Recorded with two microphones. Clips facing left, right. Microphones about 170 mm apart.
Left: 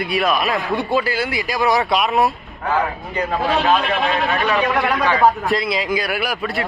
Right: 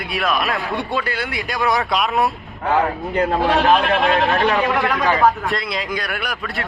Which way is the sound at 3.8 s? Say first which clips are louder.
Right 3 dB; 55° right (ahead or behind).